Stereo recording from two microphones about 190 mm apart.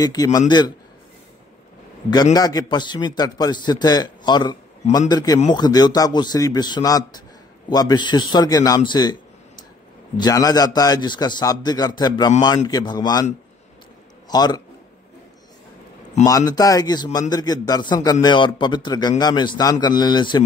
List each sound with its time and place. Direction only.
0.0 s a man's voice: 20° left (ahead or behind)
2.3 s a man's voice: 20° left (ahead or behind)
10.1 s a man's voice: 20° left (ahead or behind)
14.3 s a man's voice: 20° left (ahead or behind)
16.3 s a man's voice: 20° left (ahead or behind)